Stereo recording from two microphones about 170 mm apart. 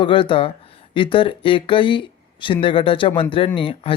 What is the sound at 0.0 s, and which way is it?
Speech, 30° left (ahead or behind).